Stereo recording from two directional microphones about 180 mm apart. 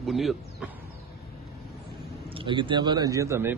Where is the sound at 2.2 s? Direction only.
30° right (ahead or behind).